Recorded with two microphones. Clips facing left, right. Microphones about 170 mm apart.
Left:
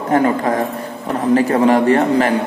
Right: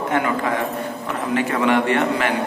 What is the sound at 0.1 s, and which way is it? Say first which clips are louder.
A man's voice: left 7 dB; 35° left (ahead or behind).